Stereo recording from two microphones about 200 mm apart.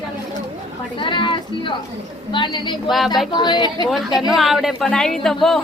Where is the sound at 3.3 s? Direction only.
20° left (ahead or behind).